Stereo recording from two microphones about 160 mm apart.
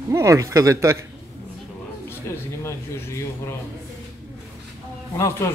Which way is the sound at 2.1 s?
15° left (ahead or behind).